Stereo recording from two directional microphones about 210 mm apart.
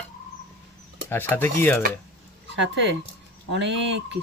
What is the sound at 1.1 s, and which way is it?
Speech, 10° left (ahead or behind).